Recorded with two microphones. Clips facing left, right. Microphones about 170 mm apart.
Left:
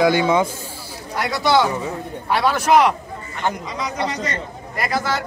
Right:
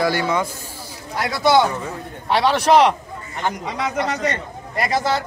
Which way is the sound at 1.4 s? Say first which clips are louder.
Right 2 dB; 20° right (ahead or behind).